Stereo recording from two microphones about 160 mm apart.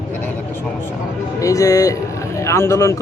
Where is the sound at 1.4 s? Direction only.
20° left (ahead or behind).